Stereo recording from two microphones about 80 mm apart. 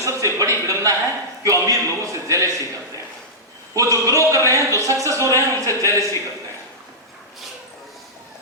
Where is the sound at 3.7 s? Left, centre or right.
Right.